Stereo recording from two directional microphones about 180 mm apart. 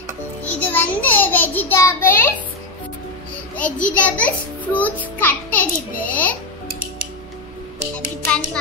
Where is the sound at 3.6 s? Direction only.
10° left (ahead or behind).